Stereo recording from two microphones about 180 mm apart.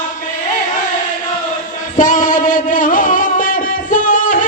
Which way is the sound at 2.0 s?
45° left (ahead or behind).